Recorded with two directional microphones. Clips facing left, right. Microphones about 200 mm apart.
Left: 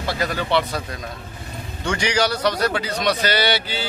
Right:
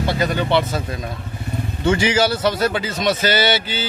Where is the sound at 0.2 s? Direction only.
25° right (ahead or behind).